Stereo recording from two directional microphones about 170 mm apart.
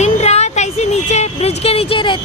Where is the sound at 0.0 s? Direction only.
40° left (ahead or behind).